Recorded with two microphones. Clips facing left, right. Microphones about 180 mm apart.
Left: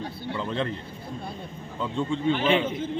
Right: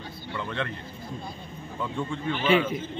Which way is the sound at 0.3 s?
30° left (ahead or behind).